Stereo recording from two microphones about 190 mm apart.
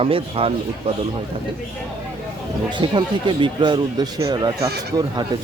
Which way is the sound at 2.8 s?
25° right (ahead or behind).